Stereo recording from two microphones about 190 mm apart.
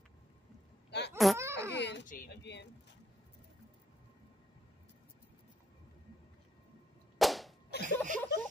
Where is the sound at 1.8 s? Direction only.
65° left (ahead or behind).